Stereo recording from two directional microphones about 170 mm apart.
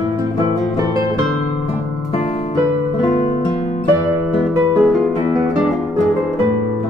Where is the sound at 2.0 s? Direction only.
35° left (ahead or behind).